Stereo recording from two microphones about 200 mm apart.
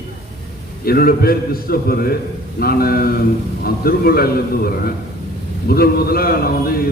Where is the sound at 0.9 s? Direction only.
50° left (ahead or behind).